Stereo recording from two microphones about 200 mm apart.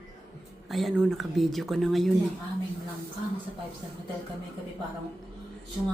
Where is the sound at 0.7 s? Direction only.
Centre (ahead or behind).